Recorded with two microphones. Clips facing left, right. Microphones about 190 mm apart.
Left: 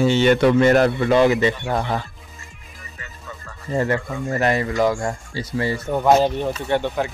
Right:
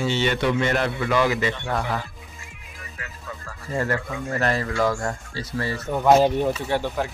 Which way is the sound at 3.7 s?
20° left (ahead or behind).